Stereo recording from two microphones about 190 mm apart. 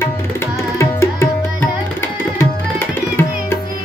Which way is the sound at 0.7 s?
15° left (ahead or behind).